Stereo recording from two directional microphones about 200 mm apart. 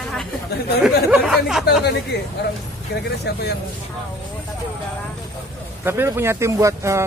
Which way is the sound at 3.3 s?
55° left (ahead or behind).